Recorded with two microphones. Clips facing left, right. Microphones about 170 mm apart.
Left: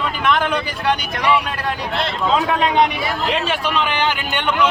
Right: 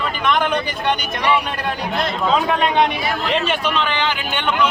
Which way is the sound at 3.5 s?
10° left (ahead or behind).